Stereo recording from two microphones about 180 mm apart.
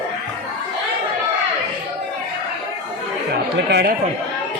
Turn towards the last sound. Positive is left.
turn(degrees=-65)  # may be behind; listen again after turning